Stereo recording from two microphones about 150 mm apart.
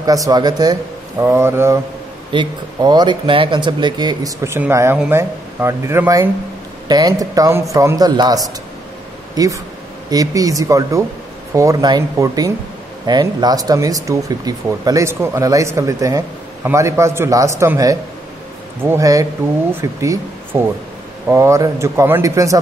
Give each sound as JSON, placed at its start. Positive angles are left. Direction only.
{"t": 0.0, "sound": "speech", "side_deg": -25}
{"t": 1.2, "sound": "speech", "side_deg": -15}
{"t": 2.3, "sound": "speech", "side_deg": -30}